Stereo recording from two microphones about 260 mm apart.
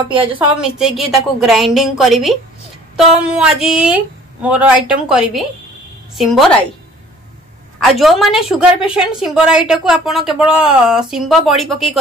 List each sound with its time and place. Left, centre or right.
0.1 s a woman's voice: centre
0.6 s a woman's voice: centre
7.8 s a woman's voice: centre